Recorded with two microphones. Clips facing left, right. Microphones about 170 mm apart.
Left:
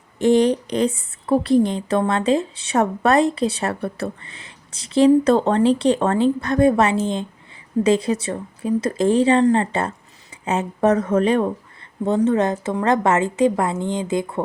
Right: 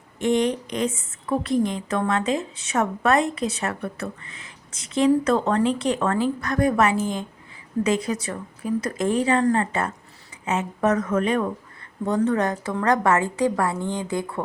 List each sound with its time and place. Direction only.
0.2 s a woman's voice: 35° left (ahead or behind)